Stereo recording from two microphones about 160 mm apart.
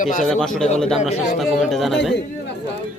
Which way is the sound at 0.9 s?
45° left (ahead or behind).